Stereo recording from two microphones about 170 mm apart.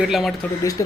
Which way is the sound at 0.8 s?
20° left (ahead or behind).